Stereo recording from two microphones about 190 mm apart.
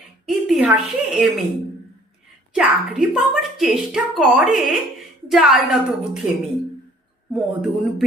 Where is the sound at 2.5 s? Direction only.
5° right (ahead or behind).